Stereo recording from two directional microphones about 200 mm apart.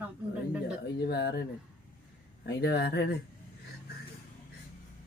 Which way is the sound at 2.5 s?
55° left (ahead or behind).